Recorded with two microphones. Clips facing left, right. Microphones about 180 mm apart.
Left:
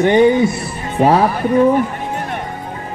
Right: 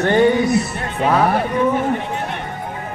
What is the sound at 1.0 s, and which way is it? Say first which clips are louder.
Speech: left 4 dB; 35° left (ahead or behind).